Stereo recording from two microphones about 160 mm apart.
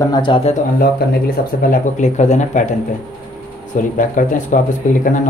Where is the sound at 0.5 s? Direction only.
50° left (ahead or behind).